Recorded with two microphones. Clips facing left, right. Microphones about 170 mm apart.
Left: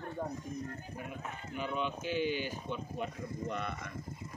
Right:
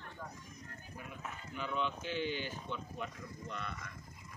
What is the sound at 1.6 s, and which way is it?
Speech, 15° left (ahead or behind).